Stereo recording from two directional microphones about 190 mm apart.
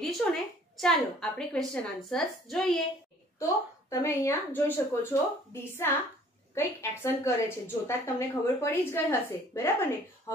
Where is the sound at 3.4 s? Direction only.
15° left (ahead or behind).